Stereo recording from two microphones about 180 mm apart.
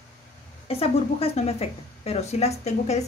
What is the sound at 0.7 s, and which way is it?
A woman's voice, 35° left (ahead or behind).